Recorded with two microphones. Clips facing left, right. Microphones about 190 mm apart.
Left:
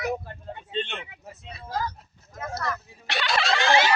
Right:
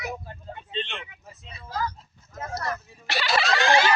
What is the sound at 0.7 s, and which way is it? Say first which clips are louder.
Vehicle: left 3 dB; 45° left (ahead or behind).